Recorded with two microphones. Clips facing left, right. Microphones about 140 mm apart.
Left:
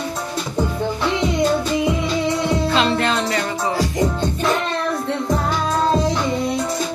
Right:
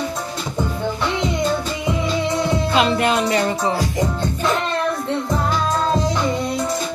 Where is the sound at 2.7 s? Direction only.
10° right (ahead or behind).